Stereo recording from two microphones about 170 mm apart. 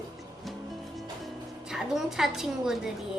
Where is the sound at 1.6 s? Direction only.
Centre (ahead or behind).